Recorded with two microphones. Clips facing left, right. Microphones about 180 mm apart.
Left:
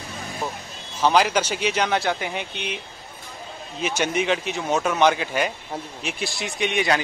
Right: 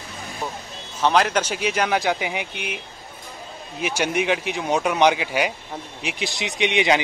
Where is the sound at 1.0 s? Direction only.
Centre (ahead or behind).